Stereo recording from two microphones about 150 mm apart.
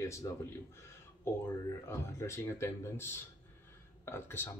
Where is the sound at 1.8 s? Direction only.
20° left (ahead or behind).